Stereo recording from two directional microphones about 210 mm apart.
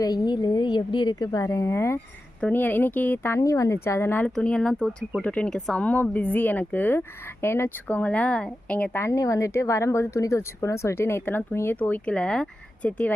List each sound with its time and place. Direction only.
0.0 s a woman's voice: 20° left (ahead or behind)